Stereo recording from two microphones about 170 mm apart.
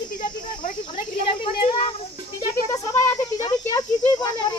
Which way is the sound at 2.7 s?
20° left (ahead or behind).